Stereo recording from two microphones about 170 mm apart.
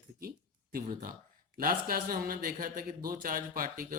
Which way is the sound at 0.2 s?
60° right (ahead or behind).